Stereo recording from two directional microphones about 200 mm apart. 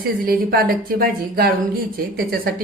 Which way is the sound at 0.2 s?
45° right (ahead or behind).